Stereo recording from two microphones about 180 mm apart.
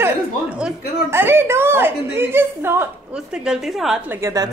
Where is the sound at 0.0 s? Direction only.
5° right (ahead or behind).